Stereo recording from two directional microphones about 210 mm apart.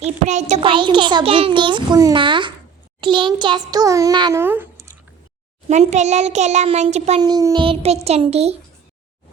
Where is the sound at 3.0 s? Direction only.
25° right (ahead or behind).